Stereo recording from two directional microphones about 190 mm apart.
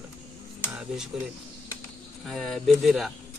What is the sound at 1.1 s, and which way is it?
Speech, 5° right (ahead or behind).